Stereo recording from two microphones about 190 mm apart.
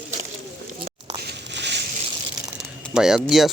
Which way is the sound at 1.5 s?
65° right (ahead or behind).